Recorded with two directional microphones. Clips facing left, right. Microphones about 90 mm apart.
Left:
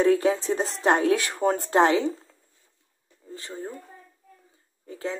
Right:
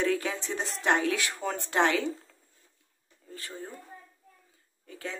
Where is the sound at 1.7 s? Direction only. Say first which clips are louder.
Left 4 dB; 30° left (ahead or behind).